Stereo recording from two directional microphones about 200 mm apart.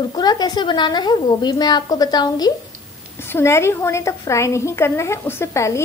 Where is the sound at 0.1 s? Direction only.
20° left (ahead or behind).